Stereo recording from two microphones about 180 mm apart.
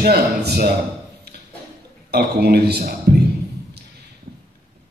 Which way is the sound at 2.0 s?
65° right (ahead or behind).